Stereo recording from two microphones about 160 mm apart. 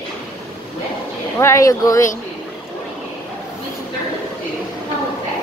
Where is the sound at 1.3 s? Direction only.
20° left (ahead or behind).